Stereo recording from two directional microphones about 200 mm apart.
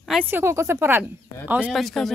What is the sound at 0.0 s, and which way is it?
A woman's voice, 5° right (ahead or behind).